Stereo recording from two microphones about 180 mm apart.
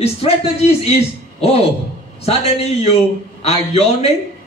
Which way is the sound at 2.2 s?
35° left (ahead or behind).